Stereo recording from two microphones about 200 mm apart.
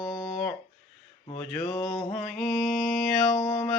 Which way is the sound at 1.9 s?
Centre (ahead or behind).